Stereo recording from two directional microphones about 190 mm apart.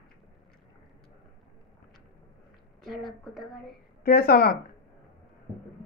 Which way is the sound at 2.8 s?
Centre (ahead or behind).